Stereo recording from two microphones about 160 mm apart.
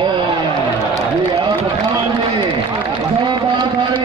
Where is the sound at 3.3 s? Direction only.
30° right (ahead or behind).